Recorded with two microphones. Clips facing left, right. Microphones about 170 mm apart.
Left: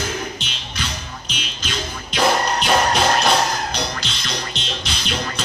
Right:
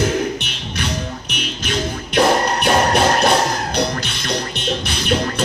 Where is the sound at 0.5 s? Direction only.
60° right (ahead or behind).